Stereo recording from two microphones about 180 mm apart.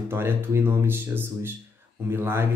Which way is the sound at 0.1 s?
15° right (ahead or behind).